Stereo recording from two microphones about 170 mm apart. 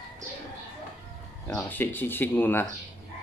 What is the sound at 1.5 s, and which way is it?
Speech, 10° left (ahead or behind).